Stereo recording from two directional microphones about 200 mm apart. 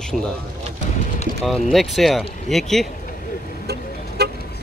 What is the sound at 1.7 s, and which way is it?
Speech, centre (ahead or behind).